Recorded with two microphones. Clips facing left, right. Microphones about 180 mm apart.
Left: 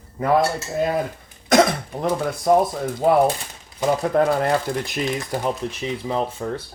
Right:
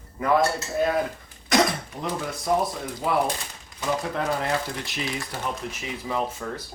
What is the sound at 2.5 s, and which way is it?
Speech, 45° left (ahead or behind).